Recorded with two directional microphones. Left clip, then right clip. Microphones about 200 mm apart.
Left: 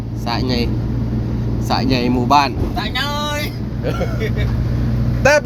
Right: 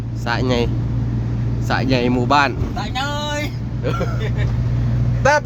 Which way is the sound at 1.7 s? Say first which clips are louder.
Even; 15° right (ahead or behind).